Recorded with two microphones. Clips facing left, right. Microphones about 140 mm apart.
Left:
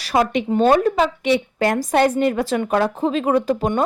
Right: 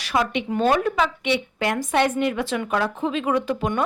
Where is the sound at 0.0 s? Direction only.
40° left (ahead or behind).